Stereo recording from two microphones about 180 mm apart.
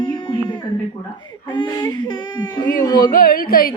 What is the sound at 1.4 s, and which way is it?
Speech, 25° left (ahead or behind).